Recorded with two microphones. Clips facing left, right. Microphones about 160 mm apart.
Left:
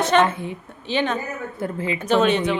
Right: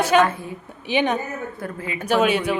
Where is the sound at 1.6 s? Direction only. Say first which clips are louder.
Left 5 dB; 25° left (ahead or behind).